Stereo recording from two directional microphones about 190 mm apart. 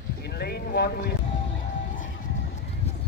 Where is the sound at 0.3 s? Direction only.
55° left (ahead or behind).